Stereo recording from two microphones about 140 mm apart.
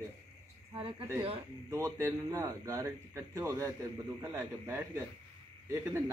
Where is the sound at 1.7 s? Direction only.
20° right (ahead or behind).